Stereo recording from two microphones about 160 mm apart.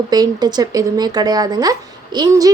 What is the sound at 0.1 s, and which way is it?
A woman's voice, 25° right (ahead or behind).